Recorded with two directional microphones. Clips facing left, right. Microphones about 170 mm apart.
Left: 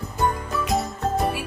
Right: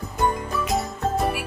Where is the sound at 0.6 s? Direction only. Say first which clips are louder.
Left 1 dB; centre (ahead or behind).